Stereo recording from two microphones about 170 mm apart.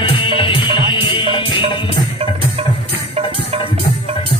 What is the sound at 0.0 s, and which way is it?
Music, 30° left (ahead or behind).